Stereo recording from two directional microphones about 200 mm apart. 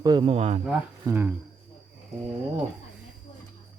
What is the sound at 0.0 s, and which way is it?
Speech, 20° right (ahead or behind).